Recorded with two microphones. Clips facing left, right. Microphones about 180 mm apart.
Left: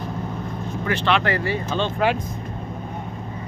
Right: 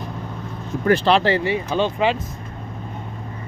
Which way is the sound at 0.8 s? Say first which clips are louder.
Right 5 dB; 40° right (ahead or behind).